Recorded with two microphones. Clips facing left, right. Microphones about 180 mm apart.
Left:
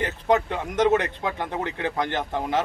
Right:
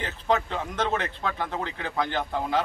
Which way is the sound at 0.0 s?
15° left (ahead or behind).